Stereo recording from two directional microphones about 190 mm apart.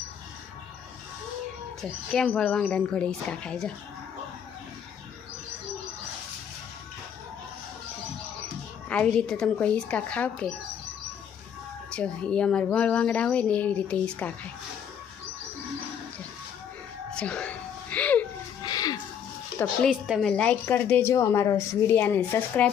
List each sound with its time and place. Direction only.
1.8 s speech: 5° left (ahead or behind)
8.9 s speech: 5° left (ahead or behind)
11.9 s a woman's voice: 5° left (ahead or behind)
17.2 s a sound: 5° left (ahead or behind)
18.6 s music: 20° left (ahead or behind)
19.5 s a woman's voice: centre (ahead or behind)